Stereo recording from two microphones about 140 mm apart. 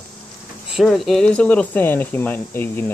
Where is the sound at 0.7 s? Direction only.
Centre (ahead or behind).